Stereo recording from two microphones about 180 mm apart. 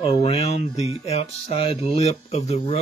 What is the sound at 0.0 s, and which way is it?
Speech, 35° left (ahead or behind).